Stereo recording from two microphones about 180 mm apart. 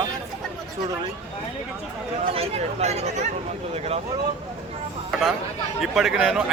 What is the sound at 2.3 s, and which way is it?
Speech, 35° right (ahead or behind).